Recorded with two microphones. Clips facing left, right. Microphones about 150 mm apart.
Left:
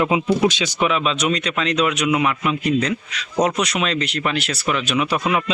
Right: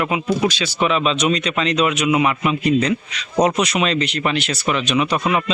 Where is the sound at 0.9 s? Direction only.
5° left (ahead or behind).